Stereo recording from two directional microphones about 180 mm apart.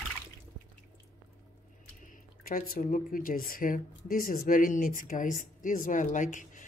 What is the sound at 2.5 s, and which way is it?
Speech, 50° left (ahead or behind).